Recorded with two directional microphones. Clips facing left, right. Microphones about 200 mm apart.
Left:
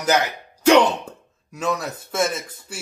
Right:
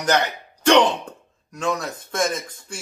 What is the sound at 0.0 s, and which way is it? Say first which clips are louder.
Speech: left 1 dB; 5° left (ahead or behind).